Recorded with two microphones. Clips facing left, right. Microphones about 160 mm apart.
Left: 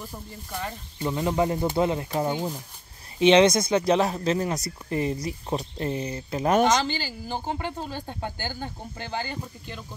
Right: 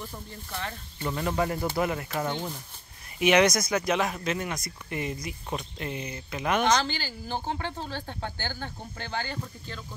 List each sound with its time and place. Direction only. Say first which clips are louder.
0.0 s speech: left 1 dB; 10° left (ahead or behind)
2.2 s speech: left 4 dB; 10° left (ahead or behind)
3.2 s speech: left 4 dB; 25° left (ahead or behind)
6.8 s speech: left 3 dB; 15° left (ahead or behind)